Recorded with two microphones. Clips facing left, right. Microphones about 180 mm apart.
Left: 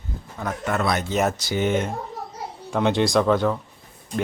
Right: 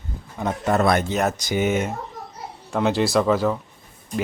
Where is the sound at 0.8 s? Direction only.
50° right (ahead or behind).